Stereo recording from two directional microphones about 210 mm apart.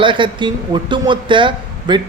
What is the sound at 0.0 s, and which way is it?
Speech, 25° right (ahead or behind).